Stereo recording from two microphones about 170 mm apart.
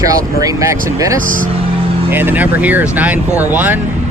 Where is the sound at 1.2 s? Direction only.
50° right (ahead or behind).